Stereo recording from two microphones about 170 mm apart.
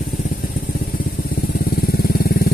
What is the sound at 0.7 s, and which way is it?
Vehicle, 60° left (ahead or behind).